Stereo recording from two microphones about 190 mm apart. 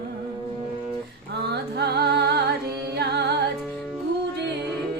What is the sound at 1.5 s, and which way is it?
Music, 60° right (ahead or behind).